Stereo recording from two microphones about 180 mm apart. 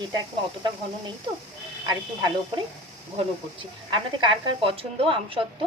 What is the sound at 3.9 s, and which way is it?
A woman's voice, 25° right (ahead or behind).